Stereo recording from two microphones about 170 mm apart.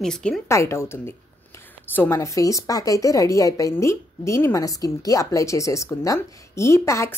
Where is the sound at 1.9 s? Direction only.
15° left (ahead or behind).